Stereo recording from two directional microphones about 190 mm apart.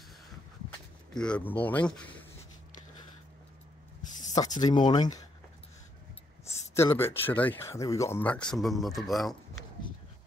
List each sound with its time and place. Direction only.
1.1 s speech: 5° left (ahead or behind)
4.3 s speech: 20° left (ahead or behind)
6.4 s speech: 15° left (ahead or behind)